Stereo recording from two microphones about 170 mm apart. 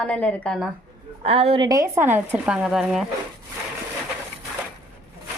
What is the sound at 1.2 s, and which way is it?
Speech, 35° right (ahead or behind).